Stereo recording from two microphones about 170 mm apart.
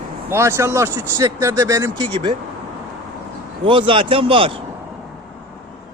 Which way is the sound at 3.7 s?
30° right (ahead or behind).